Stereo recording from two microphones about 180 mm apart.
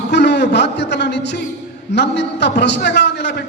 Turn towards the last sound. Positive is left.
turn(degrees=70)  # may be behind; listen again after turning